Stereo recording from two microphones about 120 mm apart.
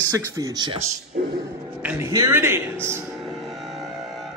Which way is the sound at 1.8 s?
15° right (ahead or behind).